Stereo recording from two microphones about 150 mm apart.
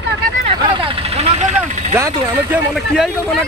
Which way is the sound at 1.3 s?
50° right (ahead or behind).